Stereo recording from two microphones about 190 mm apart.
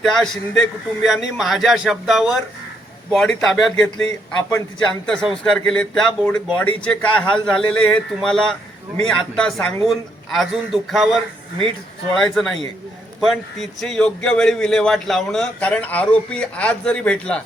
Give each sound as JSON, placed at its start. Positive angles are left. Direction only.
{"t": 0.0, "sound": "a man's voice", "side_deg": 0}